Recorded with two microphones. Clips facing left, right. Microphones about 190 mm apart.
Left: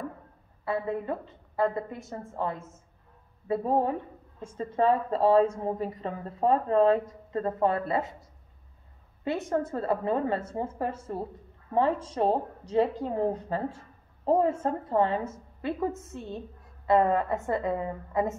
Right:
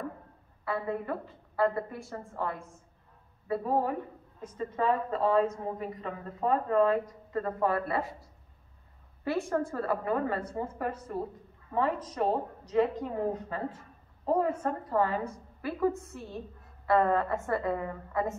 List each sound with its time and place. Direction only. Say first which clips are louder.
1.6 s a woman's voice: left 1 dB; 20° left (ahead or behind)
9.2 s a woman's voice: left 1 dB; 20° left (ahead or behind)